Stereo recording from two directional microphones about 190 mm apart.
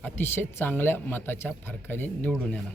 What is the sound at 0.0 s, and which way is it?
Speech, 10° left (ahead or behind).